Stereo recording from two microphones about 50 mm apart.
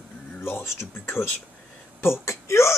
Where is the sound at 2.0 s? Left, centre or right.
Left.